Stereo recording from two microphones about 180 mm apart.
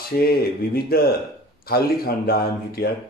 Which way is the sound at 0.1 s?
60° left (ahead or behind).